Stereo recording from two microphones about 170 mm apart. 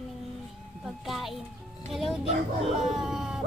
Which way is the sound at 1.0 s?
Centre (ahead or behind).